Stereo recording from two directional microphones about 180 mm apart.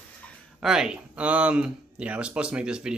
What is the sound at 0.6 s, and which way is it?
Speech, 5° right (ahead or behind).